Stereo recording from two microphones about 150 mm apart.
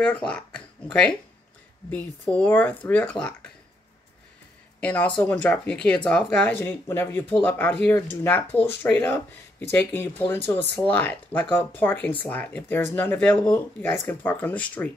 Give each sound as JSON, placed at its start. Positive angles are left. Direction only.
{"t": 0.0, "sound": "speech", "side_deg": 5}
{"t": 2.2, "sound": "speech", "side_deg": 10}
{"t": 4.7, "sound": "speech", "side_deg": 10}